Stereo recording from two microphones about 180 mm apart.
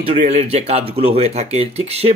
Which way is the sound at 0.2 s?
40° right (ahead or behind).